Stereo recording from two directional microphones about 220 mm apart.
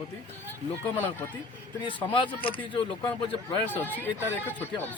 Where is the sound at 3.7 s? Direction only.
10° left (ahead or behind).